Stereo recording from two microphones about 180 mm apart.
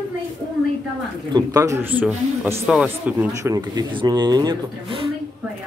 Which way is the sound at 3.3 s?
20° right (ahead or behind).